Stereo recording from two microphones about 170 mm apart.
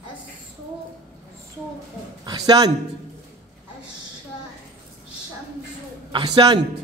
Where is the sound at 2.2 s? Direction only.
25° right (ahead or behind).